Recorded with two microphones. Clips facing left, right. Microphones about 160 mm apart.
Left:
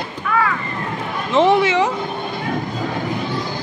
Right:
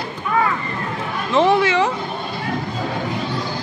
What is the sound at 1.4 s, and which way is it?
Speech, 20° left (ahead or behind).